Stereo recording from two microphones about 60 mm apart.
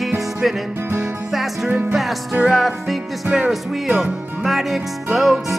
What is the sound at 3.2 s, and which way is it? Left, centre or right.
Music, centre.